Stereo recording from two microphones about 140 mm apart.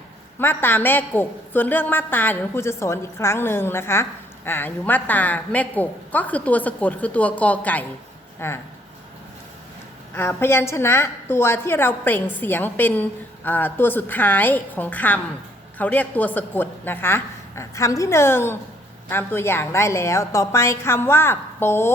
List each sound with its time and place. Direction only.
0.3 s a woman's voice: 15° left (ahead or behind)
10.2 s a woman's voice: 15° left (ahead or behind)